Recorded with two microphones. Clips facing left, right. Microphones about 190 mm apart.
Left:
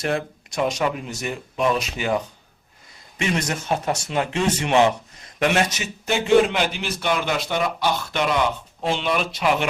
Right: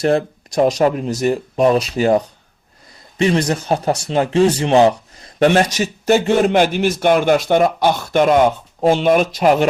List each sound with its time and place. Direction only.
0.0 s speech: 35° right (ahead or behind)